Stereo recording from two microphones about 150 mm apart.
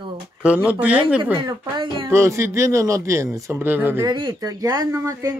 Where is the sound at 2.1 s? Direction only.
20° right (ahead or behind).